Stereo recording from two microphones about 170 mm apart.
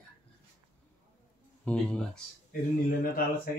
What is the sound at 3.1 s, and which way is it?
Speech, 60° left (ahead or behind).